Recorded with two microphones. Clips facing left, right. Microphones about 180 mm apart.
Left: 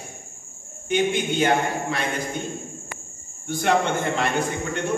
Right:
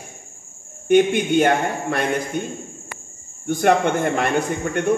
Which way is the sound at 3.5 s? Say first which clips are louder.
Right 4 dB; 55° right (ahead or behind).